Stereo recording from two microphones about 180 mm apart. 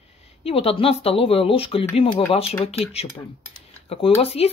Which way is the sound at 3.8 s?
35° left (ahead or behind).